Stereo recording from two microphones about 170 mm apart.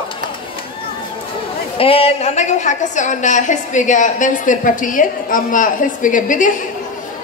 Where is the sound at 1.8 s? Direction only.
35° left (ahead or behind).